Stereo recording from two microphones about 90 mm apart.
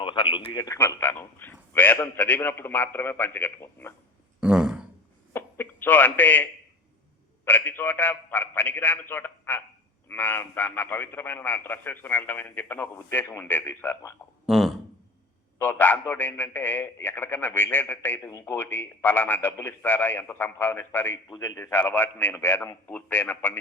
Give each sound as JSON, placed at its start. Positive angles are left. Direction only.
{"t": 0.0, "sound": "speech", "side_deg": 65}
{"t": 0.9, "sound": "a man's voice", "side_deg": 25}
{"t": 4.4, "sound": "a sound", "side_deg": -10}
{"t": 5.3, "sound": "a sound", "side_deg": 25}
{"t": 7.4, "sound": "a man's voice", "side_deg": 20}
{"t": 14.4, "sound": "a sound", "side_deg": -5}
{"t": 15.5, "sound": "a man's voice", "side_deg": 20}
{"t": 18.3, "sound": "speech", "side_deg": 35}
{"t": 18.5, "sound": "a man's voice", "side_deg": 20}